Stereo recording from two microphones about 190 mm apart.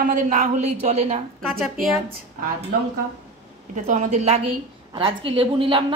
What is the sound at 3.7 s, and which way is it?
A woman's voice, 40° right (ahead or behind).